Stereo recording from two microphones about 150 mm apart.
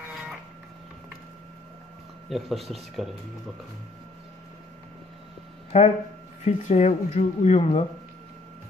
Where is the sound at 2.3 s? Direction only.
Centre (ahead or behind).